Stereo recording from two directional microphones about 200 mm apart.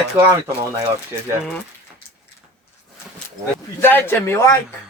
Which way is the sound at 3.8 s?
10° left (ahead or behind).